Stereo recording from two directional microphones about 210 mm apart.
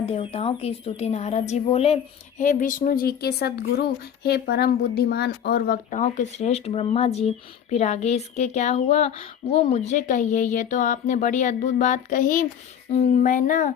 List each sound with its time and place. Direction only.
0.0 s a woman's voice: 30° left (ahead or behind)